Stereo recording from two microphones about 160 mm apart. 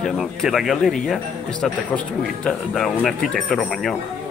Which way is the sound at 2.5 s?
Centre (ahead or behind).